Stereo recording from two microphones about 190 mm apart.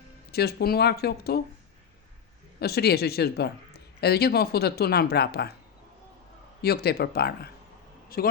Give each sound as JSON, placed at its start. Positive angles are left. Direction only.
{"t": 0.3, "sound": "a woman's voice", "side_deg": 55}
{"t": 2.6, "sound": "a woman's voice", "side_deg": 55}
{"t": 6.6, "sound": "a woman's voice", "side_deg": 55}